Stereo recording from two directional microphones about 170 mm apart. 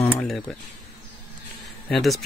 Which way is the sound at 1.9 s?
Centre (ahead or behind).